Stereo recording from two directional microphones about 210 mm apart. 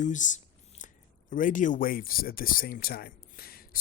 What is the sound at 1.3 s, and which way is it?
Speech, 40° left (ahead or behind).